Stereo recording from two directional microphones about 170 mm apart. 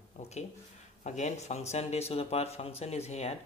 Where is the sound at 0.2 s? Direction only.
40° left (ahead or behind).